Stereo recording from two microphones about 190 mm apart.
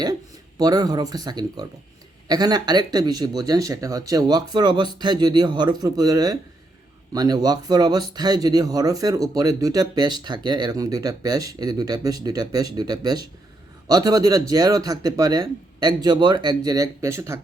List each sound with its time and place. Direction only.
0.6 s speech: 20° right (ahead or behind)